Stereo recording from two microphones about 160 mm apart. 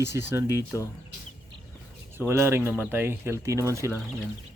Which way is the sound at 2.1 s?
15° right (ahead or behind).